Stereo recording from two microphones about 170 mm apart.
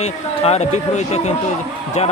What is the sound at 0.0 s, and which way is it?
A man's voice, 40° left (ahead or behind).